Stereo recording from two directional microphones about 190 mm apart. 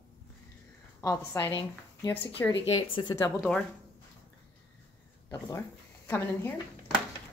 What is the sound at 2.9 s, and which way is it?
Speech, 25° left (ahead or behind).